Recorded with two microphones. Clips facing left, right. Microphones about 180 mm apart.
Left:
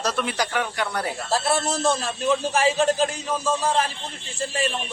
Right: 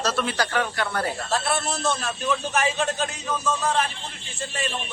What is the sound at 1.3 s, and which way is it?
A man's voice, 35° left (ahead or behind).